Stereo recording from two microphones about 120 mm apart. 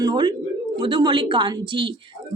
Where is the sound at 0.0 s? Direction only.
40° right (ahead or behind).